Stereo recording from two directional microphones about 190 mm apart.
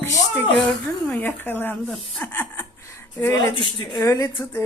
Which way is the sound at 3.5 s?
25° left (ahead or behind).